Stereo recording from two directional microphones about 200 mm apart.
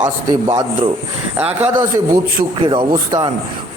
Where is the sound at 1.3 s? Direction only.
10° right (ahead or behind).